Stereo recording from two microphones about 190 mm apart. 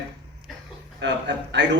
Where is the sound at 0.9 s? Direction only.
70° right (ahead or behind).